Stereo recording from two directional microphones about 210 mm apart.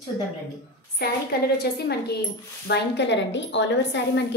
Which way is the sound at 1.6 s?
50° left (ahead or behind).